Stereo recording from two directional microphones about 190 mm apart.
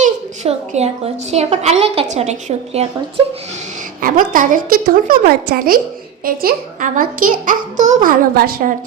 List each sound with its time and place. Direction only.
0.0 s a woman's voice: 35° right (ahead or behind)
4.0 s a child's voice: 45° right (ahead or behind)